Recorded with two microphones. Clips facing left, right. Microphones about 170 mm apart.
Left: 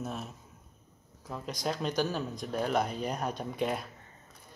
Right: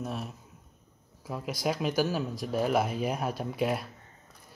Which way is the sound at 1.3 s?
10° right (ahead or behind).